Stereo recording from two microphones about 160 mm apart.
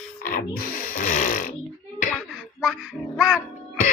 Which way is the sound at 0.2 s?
60° left (ahead or behind).